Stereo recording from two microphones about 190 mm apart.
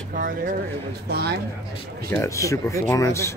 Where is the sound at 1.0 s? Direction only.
60° right (ahead or behind).